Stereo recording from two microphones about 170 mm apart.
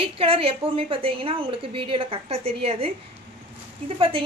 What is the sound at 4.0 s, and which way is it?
Speech, 30° right (ahead or behind).